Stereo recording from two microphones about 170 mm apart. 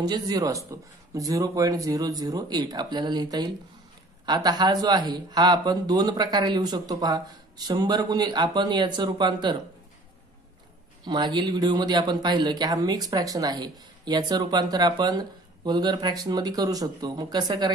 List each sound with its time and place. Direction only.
0.0 s speech: 25° right (ahead or behind)
11.1 s speech: 25° right (ahead or behind)